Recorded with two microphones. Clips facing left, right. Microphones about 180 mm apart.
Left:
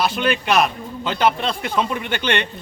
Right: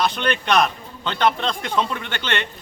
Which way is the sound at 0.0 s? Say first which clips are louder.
Left 2 dB; 5° left (ahead or behind).